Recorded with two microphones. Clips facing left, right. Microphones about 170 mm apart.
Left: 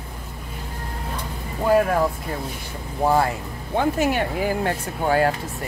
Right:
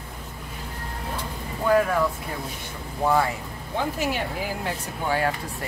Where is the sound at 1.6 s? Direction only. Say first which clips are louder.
Left 3 dB; 35° left (ahead or behind).